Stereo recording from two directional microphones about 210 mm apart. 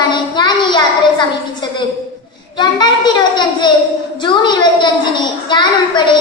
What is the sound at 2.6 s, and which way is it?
A child's voice, 20° left (ahead or behind).